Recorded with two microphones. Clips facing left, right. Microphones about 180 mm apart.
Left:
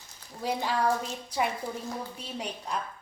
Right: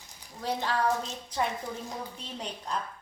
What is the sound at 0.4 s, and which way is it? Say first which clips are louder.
Speech: left 1 dB; 10° left (ahead or behind).